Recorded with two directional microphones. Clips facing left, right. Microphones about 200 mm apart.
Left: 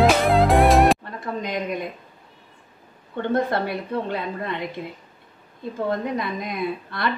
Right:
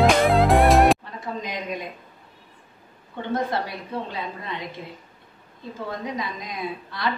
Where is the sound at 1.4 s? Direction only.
55° left (ahead or behind).